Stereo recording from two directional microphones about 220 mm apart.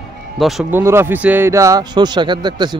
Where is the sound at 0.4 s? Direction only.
Centre (ahead or behind).